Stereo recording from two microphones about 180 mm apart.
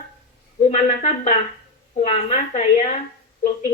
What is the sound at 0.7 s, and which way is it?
A woman's voice, 35° left (ahead or behind).